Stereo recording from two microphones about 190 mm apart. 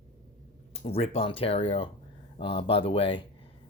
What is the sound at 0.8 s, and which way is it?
Speech, 30° left (ahead or behind).